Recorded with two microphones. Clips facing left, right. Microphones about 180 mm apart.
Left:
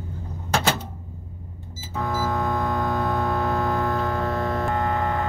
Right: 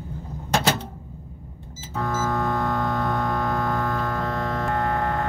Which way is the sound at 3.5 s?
20° left (ahead or behind).